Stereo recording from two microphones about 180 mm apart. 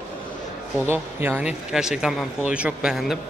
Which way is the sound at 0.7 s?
10° right (ahead or behind).